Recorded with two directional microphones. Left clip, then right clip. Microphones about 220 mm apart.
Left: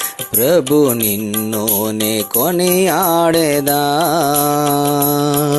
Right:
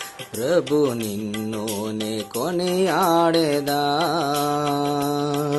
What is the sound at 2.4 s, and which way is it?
Music, 30° left (ahead or behind).